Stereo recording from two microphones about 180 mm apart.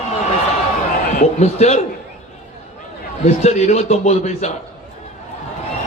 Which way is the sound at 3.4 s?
40° left (ahead or behind).